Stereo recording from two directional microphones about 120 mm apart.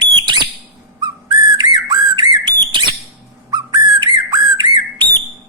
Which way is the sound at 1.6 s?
35° right (ahead or behind).